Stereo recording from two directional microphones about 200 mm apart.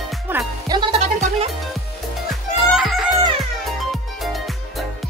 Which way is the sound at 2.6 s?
Centre (ahead or behind).